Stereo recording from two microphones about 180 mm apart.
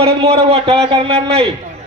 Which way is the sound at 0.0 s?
35° right (ahead or behind).